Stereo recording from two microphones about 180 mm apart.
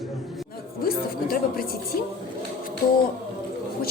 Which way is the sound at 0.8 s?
55° left (ahead or behind).